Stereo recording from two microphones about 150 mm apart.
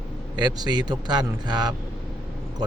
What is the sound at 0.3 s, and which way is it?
A man's voice, 30° right (ahead or behind).